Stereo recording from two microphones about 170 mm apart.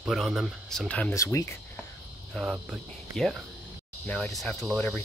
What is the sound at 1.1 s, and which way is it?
Cricket, 15° left (ahead or behind).